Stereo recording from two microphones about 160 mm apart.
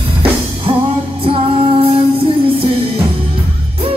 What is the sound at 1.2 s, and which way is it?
Music, 35° right (ahead or behind).